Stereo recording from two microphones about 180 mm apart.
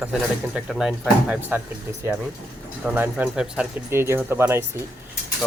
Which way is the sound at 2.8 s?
10° right (ahead or behind).